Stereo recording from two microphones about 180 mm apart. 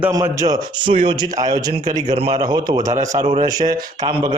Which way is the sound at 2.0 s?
35° right (ahead or behind).